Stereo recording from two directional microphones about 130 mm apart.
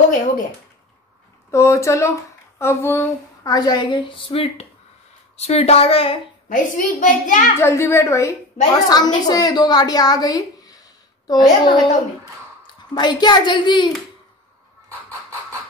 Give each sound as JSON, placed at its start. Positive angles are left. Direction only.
{"t": 1.5, "sound": "a child's voice", "side_deg": 20}
{"t": 3.5, "sound": "a woman's voice", "side_deg": 35}
{"t": 6.5, "sound": "a woman's voice", "side_deg": 85}
{"t": 7.5, "sound": "a child's voice", "side_deg": 20}
{"t": 12.9, "sound": "a woman's voice", "side_deg": 35}